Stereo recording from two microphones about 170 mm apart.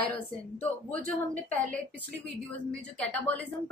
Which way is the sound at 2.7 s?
5° left (ahead or behind).